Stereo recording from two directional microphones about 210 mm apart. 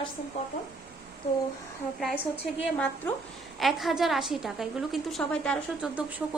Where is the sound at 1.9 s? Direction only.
Centre (ahead or behind).